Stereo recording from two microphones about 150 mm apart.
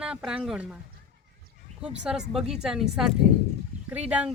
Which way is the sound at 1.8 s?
5° right (ahead or behind).